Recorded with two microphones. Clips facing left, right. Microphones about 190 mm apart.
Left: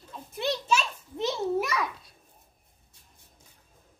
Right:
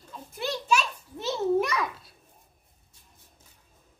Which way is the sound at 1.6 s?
Centre (ahead or behind).